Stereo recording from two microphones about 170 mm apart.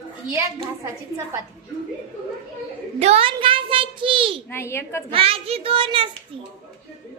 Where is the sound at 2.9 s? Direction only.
35° right (ahead or behind).